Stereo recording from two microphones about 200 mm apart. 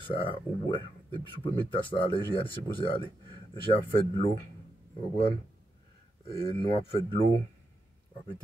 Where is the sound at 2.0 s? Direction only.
25° left (ahead or behind).